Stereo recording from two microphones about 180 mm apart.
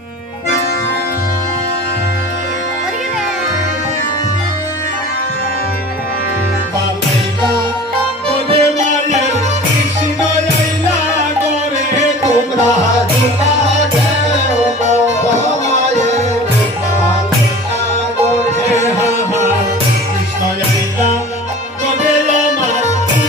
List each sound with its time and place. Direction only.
8.4 s music: 40° right (ahead or behind)